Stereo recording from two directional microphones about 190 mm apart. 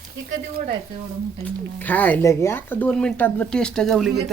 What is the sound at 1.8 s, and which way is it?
Speech, 10° left (ahead or behind).